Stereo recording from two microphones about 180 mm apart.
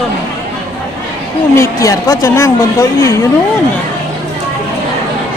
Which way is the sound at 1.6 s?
15° left (ahead or behind).